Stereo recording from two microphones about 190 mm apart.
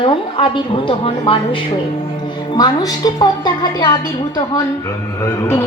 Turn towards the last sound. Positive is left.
turn(degrees=15)  # may be behind; listen again after turning